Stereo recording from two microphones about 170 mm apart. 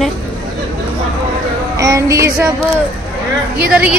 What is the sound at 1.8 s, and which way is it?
Female singing, 20° right (ahead or behind).